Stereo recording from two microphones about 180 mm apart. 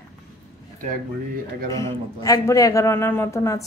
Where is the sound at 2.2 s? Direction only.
20° left (ahead or behind).